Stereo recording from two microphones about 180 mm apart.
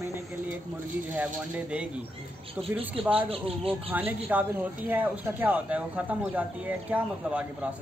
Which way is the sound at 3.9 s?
10° right (ahead or behind).